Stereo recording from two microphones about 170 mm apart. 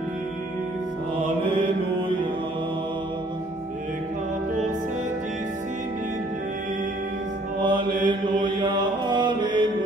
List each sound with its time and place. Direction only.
7.6 s mantra: 25° right (ahead or behind)